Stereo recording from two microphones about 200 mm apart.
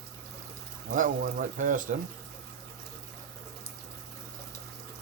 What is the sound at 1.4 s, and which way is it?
Speech, 40° right (ahead or behind).